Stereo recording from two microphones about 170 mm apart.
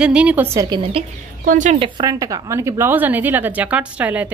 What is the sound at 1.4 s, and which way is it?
Speech, 50° right (ahead or behind).